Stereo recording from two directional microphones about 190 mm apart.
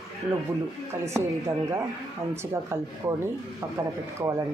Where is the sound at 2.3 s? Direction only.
15° right (ahead or behind).